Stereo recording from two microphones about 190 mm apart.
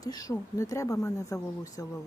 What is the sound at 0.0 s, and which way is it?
Speech, 20° left (ahead or behind).